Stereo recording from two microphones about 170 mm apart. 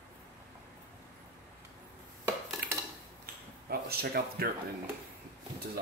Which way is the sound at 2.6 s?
65° right (ahead or behind).